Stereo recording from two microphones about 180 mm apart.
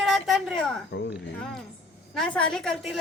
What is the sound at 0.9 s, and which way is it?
Speech, 65° left (ahead or behind).